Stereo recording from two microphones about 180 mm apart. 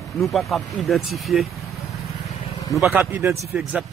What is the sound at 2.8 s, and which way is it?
Speech, 10° right (ahead or behind).